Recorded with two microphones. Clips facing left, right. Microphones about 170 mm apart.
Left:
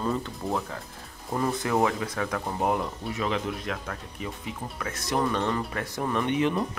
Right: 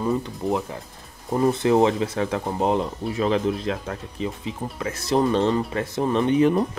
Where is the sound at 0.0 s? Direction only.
15° right (ahead or behind).